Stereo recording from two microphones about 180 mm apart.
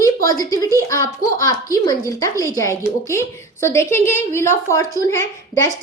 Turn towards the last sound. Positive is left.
turn(degrees=15)  # may be behind; listen again after turning